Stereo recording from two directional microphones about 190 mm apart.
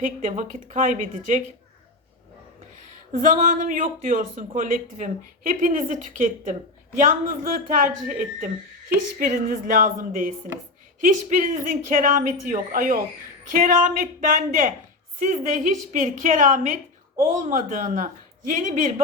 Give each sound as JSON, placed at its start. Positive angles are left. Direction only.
{"t": 0.0, "sound": "a woman's voice", "side_deg": -40}
{"t": 3.1, "sound": "a woman's voice", "side_deg": -45}